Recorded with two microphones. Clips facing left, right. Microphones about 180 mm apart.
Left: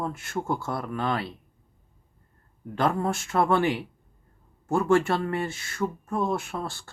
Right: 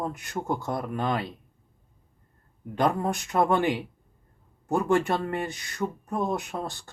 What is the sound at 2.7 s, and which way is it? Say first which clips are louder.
Speech: even; 15° right (ahead or behind).